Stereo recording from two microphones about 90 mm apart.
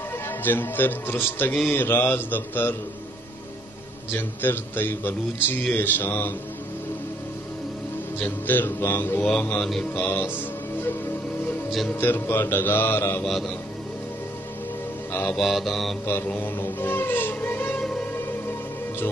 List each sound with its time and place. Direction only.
0.3 s speech: 20° left (ahead or behind)
4.1 s speech: 20° left (ahead or behind)
8.2 s speech: 20° left (ahead or behind)
9.2 s mantra: 15° left (ahead or behind)
9.9 s speech: 25° left (ahead or behind)
12.0 s speech: 25° left (ahead or behind)
13.2 s mantra: centre (ahead or behind)
15.3 s mantra: centre (ahead or behind)
16.3 s music: 25° left (ahead or behind)